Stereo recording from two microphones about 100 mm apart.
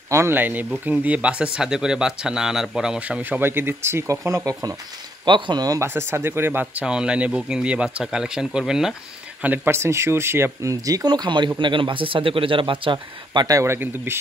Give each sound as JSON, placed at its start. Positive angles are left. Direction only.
{"t": 0.1, "sound": "speech", "side_deg": -25}
{"t": 5.2, "sound": "speech", "side_deg": -50}
{"t": 5.8, "sound": "speech", "side_deg": -25}
{"t": 9.4, "sound": "speech", "side_deg": -20}
{"t": 13.5, "sound": "speech", "side_deg": -30}